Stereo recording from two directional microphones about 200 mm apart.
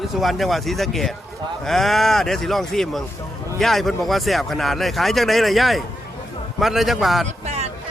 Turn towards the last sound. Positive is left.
turn(degrees=-35)  # may be behind; listen again after turning